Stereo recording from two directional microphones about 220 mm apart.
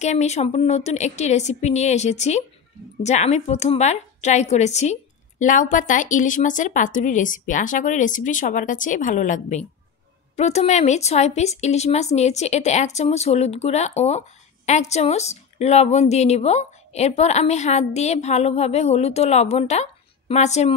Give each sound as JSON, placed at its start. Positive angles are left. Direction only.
{"t": 0.0, "sound": "a woman's voice", "side_deg": 30}